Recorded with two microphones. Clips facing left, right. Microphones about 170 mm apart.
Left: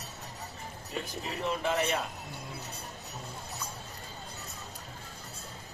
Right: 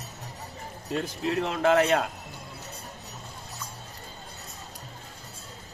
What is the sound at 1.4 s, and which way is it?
Speech, 90° right.